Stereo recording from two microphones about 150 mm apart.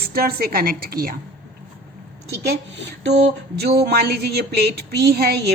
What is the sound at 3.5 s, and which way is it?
A woman's voice, 90° right.